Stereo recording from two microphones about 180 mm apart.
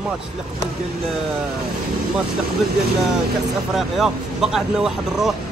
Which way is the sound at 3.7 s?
Centre (ahead or behind).